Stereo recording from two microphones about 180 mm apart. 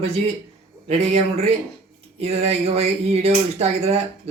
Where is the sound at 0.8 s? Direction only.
35° right (ahead or behind).